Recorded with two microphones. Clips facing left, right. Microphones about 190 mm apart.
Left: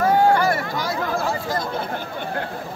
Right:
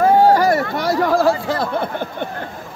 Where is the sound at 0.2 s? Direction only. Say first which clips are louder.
Right 4 dB; 35° right (ahead or behind).